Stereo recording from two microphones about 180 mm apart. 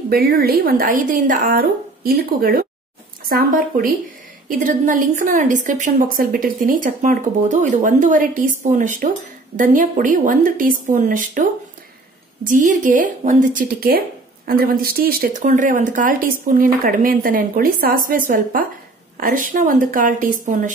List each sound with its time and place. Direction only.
0.1 s speech: 60° right (ahead or behind)
12.4 s speech: 45° right (ahead or behind)